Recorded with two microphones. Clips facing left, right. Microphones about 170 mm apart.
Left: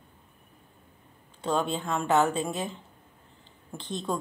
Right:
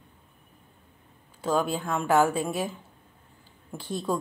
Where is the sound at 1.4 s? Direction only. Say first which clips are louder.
Right 2 dB; 5° right (ahead or behind).